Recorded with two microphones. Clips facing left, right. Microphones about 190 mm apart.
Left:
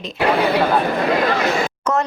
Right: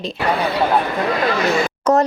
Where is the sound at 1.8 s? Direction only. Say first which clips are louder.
Right 6 dB; 40° right (ahead or behind).